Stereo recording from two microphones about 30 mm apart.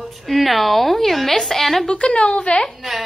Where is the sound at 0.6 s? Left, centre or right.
Centre.